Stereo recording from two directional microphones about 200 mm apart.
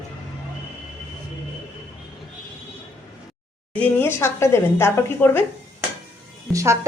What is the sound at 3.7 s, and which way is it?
Speech, 10° left (ahead or behind).